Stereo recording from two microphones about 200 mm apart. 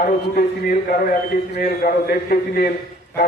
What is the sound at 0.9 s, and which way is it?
A man's voice, 45° left (ahead or behind).